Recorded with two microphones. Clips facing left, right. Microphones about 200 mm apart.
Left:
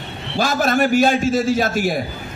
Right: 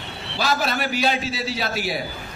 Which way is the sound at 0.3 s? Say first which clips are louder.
Left 6 dB; 50° left (ahead or behind).